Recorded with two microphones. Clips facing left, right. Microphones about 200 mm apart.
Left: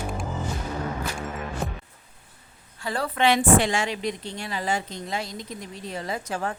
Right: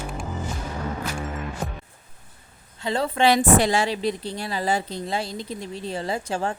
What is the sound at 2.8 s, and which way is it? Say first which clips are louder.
Speech: right 4 dB; 25° right (ahead or behind).